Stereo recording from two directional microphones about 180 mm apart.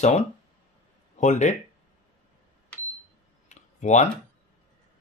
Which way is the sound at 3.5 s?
40° left (ahead or behind).